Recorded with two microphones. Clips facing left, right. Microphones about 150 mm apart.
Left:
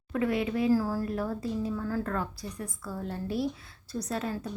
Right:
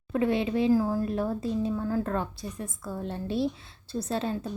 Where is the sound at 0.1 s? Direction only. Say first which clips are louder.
Right 3 dB; 25° right (ahead or behind).